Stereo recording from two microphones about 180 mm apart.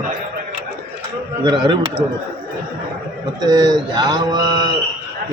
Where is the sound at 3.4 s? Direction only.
20° right (ahead or behind).